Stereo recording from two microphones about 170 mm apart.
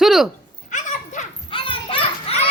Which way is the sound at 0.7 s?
45° left (ahead or behind).